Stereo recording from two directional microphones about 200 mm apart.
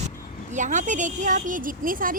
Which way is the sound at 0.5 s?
40° right (ahead or behind).